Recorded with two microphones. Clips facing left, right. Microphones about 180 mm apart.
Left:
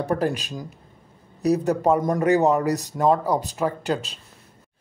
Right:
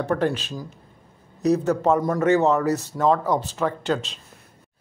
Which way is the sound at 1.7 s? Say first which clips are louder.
Even; 10° left (ahead or behind).